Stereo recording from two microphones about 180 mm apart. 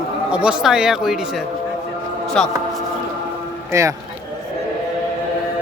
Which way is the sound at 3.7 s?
15° right (ahead or behind).